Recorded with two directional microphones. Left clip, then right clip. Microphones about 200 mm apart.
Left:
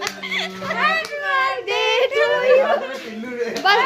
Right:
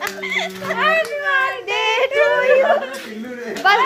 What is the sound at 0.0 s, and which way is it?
Children playing, centre (ahead or behind).